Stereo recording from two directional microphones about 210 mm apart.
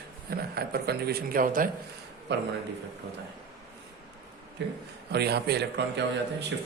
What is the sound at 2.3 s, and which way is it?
Speech, 55° right (ahead or behind).